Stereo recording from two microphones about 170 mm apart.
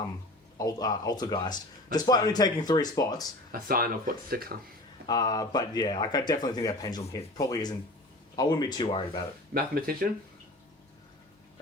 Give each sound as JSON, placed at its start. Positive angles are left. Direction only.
{"t": 0.6, "sound": "speech", "side_deg": 20}
{"t": 3.5, "sound": "speech", "side_deg": -60}
{"t": 5.0, "sound": "speech", "side_deg": 25}
{"t": 9.6, "sound": "speech", "side_deg": -60}